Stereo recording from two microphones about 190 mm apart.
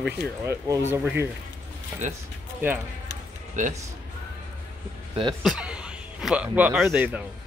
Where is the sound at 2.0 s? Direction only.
40° right (ahead or behind).